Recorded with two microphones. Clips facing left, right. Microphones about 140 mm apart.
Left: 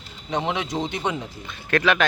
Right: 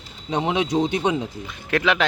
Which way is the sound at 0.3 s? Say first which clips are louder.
Right 4 dB; 15° right (ahead or behind).